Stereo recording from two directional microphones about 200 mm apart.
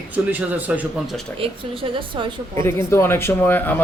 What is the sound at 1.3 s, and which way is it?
A woman's voice, 30° right (ahead or behind).